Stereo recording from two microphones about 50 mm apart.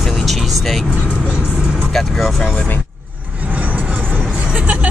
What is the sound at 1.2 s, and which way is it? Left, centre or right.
Vehicle, right.